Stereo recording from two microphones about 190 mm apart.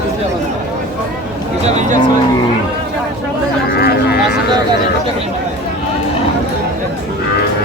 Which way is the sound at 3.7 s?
55° left (ahead or behind).